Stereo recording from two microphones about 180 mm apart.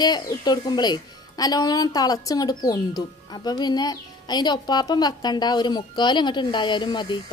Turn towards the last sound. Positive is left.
turn(degrees=25)  # may be behind; listen again after turning